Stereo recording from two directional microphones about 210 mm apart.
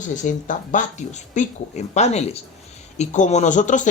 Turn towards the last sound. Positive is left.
turn(degrees=35)  # may be behind; listen again after turning